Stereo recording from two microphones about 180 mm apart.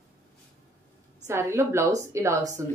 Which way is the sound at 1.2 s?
15° right (ahead or behind).